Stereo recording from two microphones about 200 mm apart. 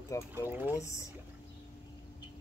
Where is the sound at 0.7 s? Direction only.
15° left (ahead or behind).